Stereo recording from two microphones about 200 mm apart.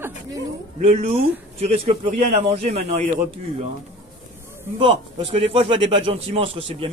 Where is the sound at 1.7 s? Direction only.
35° right (ahead or behind).